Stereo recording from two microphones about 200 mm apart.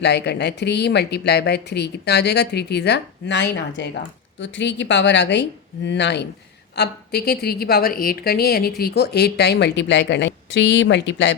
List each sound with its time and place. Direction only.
0.0 s a woman's voice: 60° left (ahead or behind)